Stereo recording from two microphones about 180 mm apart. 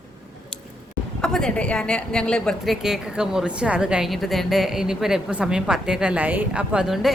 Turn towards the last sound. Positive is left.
turn(degrees=0)  # may be behind; listen again after turning